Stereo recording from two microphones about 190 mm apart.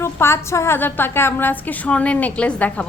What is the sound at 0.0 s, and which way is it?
A woman's voice, 15° left (ahead or behind).